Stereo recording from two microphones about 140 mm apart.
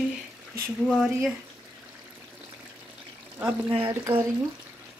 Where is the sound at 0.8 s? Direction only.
5° right (ahead or behind).